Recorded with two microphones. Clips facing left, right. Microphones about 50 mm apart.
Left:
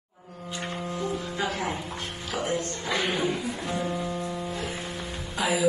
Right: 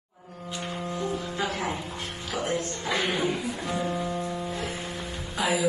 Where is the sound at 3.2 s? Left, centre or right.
Right.